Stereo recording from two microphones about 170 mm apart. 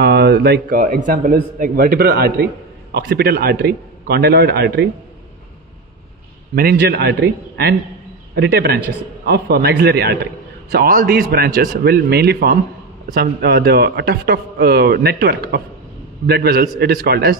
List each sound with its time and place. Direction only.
0.0 s a man's voice: 75° right (ahead or behind)
6.5 s a man's voice: 60° right (ahead or behind)
10.7 s a man's voice: 60° right (ahead or behind)